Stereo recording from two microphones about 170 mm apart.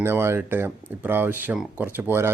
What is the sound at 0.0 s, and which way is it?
Speech, 15° right (ahead or behind).